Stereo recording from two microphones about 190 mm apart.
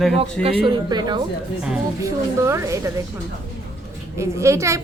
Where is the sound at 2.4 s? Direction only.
15° right (ahead or behind).